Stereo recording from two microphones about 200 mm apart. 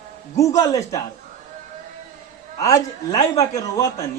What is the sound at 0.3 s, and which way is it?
Speech, 15° left (ahead or behind).